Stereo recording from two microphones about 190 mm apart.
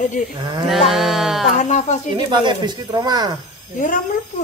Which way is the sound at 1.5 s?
40° left (ahead or behind).